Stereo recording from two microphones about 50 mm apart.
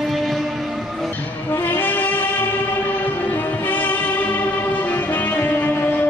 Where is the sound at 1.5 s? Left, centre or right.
Left.